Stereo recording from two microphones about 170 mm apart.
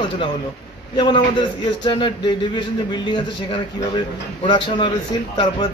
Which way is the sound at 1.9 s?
25° left (ahead or behind).